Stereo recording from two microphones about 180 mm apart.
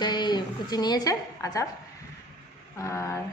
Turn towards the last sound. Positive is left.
turn(degrees=15)  # may be behind; listen again after turning